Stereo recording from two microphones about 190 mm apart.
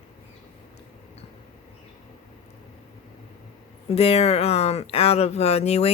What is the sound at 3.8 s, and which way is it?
Speech, 30° left (ahead or behind).